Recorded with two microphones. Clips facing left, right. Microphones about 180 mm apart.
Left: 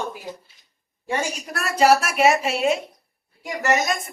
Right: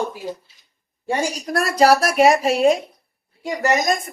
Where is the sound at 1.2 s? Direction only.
35° right (ahead or behind).